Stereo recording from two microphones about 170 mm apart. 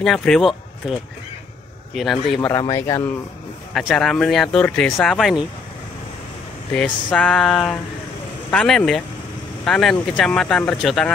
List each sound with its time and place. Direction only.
0.0 s speech: 5° left (ahead or behind)
2.0 s speech: centre (ahead or behind)
2.5 s speech: 20° left (ahead or behind)
3.7 s speech: centre (ahead or behind)
6.7 s speech: 5° left (ahead or behind)